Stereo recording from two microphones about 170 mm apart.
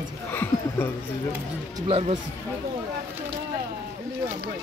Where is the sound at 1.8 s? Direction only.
35° right (ahead or behind).